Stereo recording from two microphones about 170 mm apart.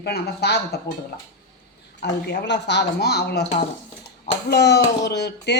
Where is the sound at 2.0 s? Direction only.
80° left.